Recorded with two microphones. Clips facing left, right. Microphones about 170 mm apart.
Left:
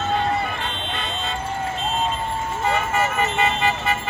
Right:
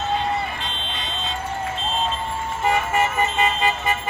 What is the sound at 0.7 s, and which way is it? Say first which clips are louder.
Vehicle: left 3 dB; 55° left (ahead or behind).